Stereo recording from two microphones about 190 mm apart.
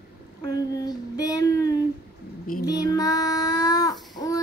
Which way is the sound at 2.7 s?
20° left (ahead or behind).